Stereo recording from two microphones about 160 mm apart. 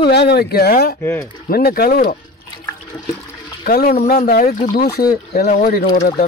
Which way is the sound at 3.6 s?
70° left (ahead or behind).